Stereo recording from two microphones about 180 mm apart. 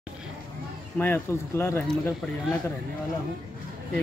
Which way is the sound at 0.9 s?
10° left (ahead or behind).